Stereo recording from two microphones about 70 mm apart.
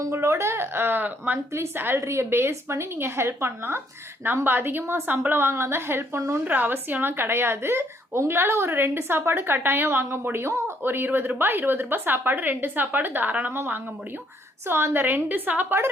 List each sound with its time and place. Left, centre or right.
0.1 s speech: right
1.5 s speech: right
6.4 s speech: right
14.9 s a woman's voice: right